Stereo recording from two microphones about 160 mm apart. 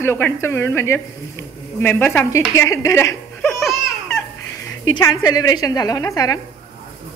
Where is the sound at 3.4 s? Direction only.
Centre (ahead or behind).